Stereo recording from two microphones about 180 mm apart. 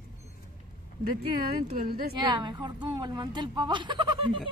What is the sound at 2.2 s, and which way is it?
Speech, 25° right (ahead or behind).